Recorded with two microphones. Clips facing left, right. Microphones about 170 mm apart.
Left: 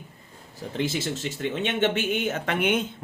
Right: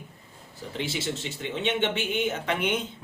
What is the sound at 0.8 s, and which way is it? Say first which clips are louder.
A man's voice: left 3 dB; 45° left (ahead or behind).